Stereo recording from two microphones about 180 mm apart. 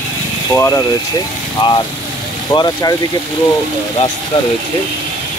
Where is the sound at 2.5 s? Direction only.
20° left (ahead or behind).